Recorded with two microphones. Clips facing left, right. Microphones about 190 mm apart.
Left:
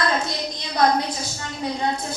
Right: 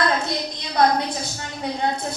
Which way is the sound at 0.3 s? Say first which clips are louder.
Right 1 dB; 60° right (ahead or behind).